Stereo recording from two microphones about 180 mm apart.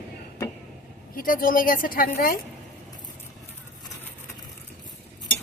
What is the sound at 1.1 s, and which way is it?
A woman's voice, 50° left (ahead or behind).